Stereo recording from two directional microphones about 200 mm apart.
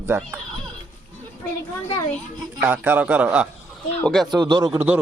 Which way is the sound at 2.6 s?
10° right (ahead or behind).